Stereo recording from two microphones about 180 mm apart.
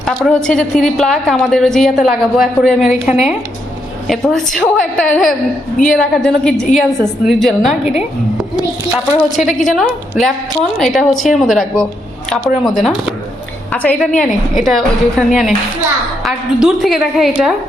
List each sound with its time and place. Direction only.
0.0 s a woman's voice: centre (ahead or behind)
9.3 s a woman's voice: centre (ahead or behind)